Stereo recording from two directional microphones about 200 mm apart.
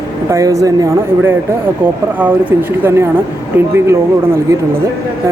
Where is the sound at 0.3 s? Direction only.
15° right (ahead or behind).